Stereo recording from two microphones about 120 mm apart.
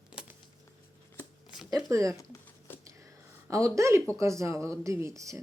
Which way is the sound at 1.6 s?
30° right (ahead or behind).